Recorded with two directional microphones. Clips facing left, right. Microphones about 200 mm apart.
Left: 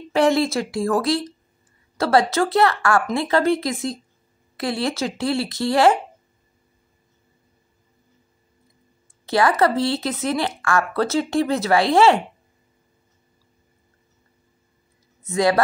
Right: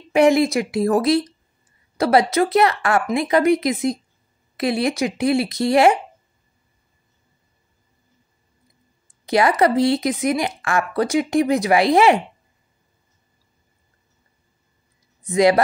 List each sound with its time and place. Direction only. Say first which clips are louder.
0.1 s a woman's voice: right 3 dB; 15° right (ahead or behind)
9.2 s speech: right 1 dB; 20° right (ahead or behind)
15.2 s speech: right 3 dB; 20° right (ahead or behind)